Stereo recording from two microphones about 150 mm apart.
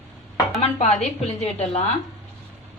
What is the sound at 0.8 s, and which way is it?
A woman's voice, 45° left (ahead or behind).